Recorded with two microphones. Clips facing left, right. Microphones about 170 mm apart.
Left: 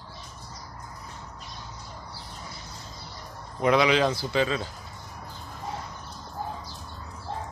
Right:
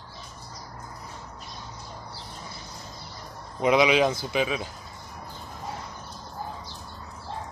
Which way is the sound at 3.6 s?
15° right (ahead or behind).